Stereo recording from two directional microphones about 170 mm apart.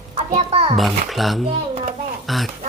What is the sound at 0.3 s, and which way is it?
Speech, 35° right (ahead or behind).